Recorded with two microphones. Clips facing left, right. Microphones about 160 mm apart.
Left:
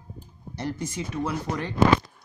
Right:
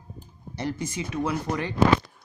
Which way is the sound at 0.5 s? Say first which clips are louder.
Right 1 dB; 90° right.